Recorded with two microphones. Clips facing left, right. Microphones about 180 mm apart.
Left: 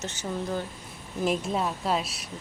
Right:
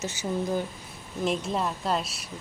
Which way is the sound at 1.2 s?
5° left (ahead or behind).